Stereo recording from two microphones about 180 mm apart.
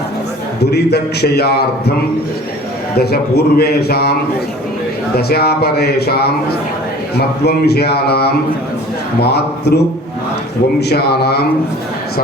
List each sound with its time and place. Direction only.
0.6 s a man's voice: 65° left (ahead or behind)
2.9 s a man's voice: 60° left (ahead or behind)
5.1 s a man's voice: 60° left (ahead or behind)
10.8 s a man's voice: 65° left (ahead or behind)